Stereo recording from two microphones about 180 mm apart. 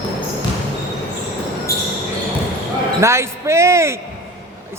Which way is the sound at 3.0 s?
15° right (ahead or behind).